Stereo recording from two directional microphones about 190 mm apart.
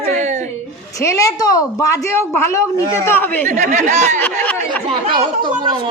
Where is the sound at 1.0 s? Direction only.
15° left (ahead or behind).